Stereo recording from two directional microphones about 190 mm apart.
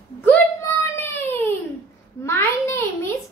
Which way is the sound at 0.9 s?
10° left (ahead or behind).